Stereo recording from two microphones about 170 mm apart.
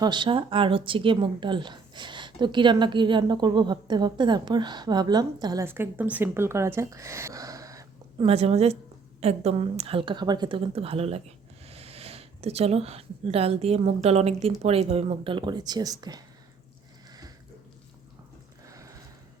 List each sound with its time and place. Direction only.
0.0 s a woman's voice: 25° right (ahead or behind)
8.2 s a woman's voice: 35° right (ahead or behind)
18.6 s a sound: 20° right (ahead or behind)